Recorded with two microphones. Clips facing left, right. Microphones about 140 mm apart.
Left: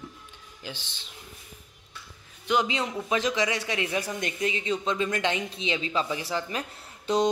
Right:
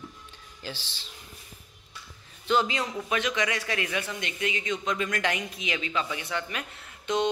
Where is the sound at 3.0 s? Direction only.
30° left (ahead or behind).